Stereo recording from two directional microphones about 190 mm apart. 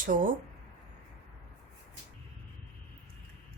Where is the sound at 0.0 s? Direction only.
45° right (ahead or behind).